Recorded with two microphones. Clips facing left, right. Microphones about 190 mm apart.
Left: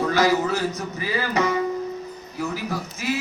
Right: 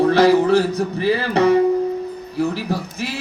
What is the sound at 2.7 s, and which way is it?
Speech, 30° right (ahead or behind).